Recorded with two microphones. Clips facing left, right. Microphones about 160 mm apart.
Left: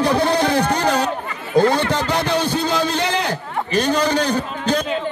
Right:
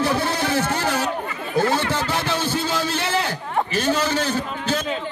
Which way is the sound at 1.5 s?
15° left (ahead or behind).